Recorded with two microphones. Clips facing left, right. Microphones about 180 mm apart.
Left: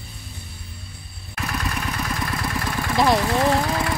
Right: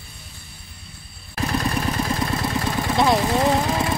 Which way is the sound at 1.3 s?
30° right (ahead or behind).